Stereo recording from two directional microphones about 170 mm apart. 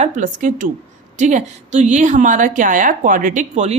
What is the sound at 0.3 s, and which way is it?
A woman's voice, 50° right (ahead or behind).